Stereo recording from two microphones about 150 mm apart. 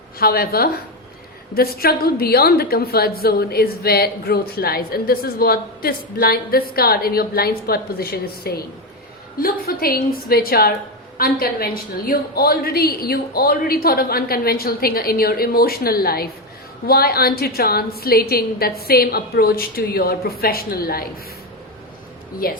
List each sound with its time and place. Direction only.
0.2 s a woman's voice: 90° left
11.2 s a woman's voice: 75° left (ahead or behind)
22.4 s a woman's voice: 75° left (ahead or behind)